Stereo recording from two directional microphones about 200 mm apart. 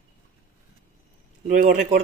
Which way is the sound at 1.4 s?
40° right (ahead or behind).